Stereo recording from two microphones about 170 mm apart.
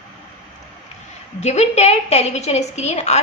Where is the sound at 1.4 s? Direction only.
40° left (ahead or behind).